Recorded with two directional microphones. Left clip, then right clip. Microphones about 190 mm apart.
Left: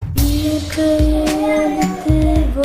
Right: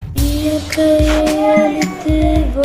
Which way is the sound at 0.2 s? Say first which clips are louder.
Right 1 dB; centre (ahead or behind).